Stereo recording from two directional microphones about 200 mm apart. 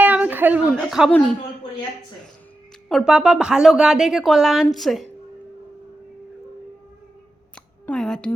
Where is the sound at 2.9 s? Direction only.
5° right (ahead or behind).